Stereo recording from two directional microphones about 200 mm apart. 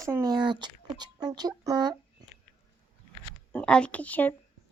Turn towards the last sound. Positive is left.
turn(degrees=10)  # may be behind; listen again after turning